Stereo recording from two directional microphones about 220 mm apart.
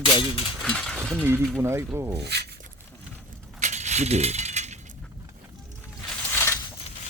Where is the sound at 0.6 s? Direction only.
5° left (ahead or behind); by 2.1 s 10° right (ahead or behind).